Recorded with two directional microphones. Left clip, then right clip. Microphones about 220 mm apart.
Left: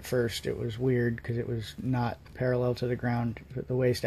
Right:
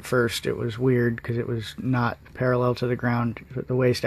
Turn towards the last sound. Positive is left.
turn(degrees=-15)  # may be behind; listen again after turning